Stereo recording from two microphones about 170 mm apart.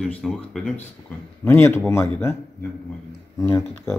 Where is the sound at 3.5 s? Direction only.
15° left (ahead or behind).